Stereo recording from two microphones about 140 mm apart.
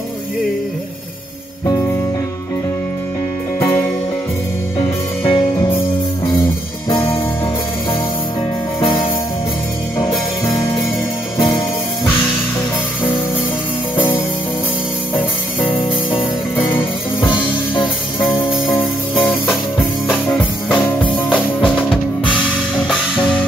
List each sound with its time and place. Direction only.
4.7 s music: 40° left (ahead or behind)
6.9 s music: 35° left (ahead or behind)
16.1 s music: 15° left (ahead or behind)
17.2 s music: 35° left (ahead or behind)
20.3 s music: 10° left (ahead or behind)